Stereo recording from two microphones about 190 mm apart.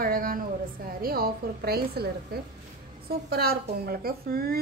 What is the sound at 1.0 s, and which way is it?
A woman's voice, 50° right (ahead or behind).